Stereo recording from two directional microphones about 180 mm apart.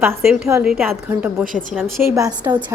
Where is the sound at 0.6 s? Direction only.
5° right (ahead or behind).